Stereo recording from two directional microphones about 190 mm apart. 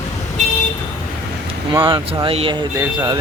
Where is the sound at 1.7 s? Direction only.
20° right (ahead or behind).